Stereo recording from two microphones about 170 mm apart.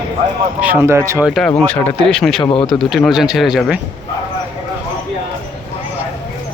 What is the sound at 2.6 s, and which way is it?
Speech, centre (ahead or behind).